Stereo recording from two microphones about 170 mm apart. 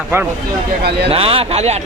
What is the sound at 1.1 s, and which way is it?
Speech, 35° right (ahead or behind).